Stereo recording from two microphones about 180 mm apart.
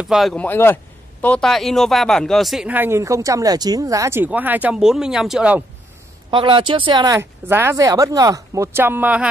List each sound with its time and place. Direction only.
0.0 s speech: centre (ahead or behind)
6.3 s speech: 30° right (ahead or behind)
7.2 s speech: 15° right (ahead or behind)